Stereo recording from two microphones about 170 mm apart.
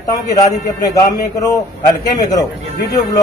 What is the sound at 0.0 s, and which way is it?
A man's voice, 20° left (ahead or behind).